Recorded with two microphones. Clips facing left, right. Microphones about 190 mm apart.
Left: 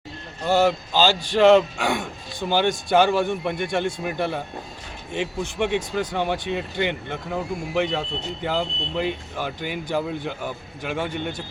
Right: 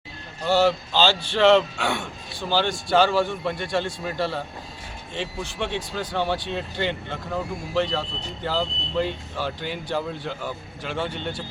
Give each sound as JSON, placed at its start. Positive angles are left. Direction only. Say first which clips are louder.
{"t": 0.5, "sound": "speech", "louder": "left 1 dB", "side_deg": 15}
{"t": 5.5, "sound": "speech", "louder": "left 5 dB", "side_deg": 15}